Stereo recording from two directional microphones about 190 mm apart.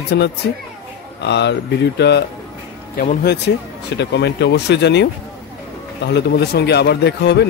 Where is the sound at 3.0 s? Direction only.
50° left (ahead or behind).